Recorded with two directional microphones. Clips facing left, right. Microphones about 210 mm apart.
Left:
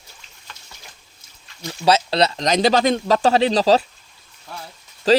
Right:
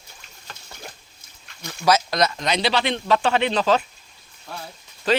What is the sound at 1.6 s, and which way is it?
Speech, 30° left (ahead or behind).